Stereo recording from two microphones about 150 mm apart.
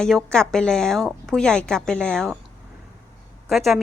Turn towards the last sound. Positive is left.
turn(degrees=0)  # may be behind; listen again after turning